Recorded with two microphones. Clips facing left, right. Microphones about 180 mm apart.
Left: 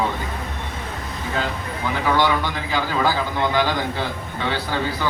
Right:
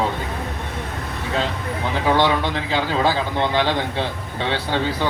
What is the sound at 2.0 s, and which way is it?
A man's voice, 25° right (ahead or behind).